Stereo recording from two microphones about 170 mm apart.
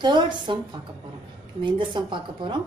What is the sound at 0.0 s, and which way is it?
Speech, 25° right (ahead or behind).